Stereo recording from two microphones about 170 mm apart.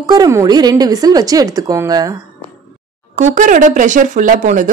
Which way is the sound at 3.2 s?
45° right (ahead or behind).